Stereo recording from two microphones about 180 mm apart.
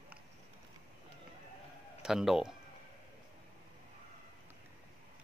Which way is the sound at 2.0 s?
5° right (ahead or behind).